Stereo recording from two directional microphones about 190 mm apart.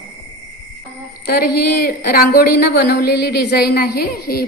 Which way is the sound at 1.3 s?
55° left (ahead or behind).